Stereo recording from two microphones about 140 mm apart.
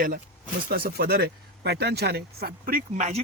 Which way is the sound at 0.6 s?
90° right.